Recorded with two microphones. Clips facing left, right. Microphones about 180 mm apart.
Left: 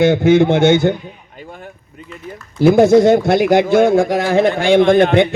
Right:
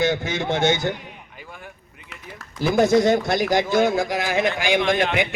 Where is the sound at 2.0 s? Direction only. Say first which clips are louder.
Left 10 dB; 90° right.